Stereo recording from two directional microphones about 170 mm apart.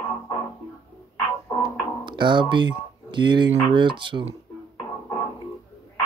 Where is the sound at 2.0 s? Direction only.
25° right (ahead or behind).